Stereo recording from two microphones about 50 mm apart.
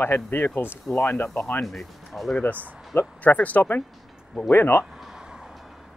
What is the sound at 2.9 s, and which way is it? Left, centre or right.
Speech, left.